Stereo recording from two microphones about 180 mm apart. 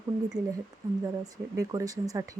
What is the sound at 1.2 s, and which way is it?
Speech, 20° right (ahead or behind).